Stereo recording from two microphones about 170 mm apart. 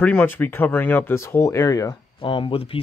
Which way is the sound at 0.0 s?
10° left (ahead or behind).